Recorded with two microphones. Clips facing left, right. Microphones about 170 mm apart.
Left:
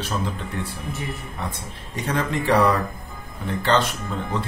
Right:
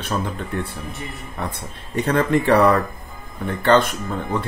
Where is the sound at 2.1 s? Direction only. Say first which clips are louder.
Right 5 dB; 55° right (ahead or behind).